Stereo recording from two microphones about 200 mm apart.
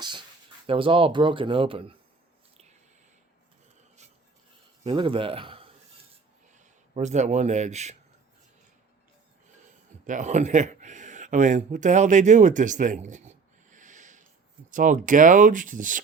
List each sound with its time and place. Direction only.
0.7 s speech: 25° right (ahead or behind)
4.8 s speech: 30° right (ahead or behind)
6.9 s speech: 35° right (ahead or behind)
10.1 s speech: 35° right (ahead or behind)